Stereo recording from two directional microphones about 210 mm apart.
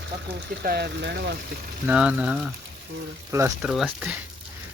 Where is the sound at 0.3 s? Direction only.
50° right (ahead or behind).